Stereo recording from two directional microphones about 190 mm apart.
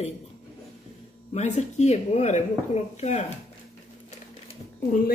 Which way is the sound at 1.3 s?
35° left (ahead or behind).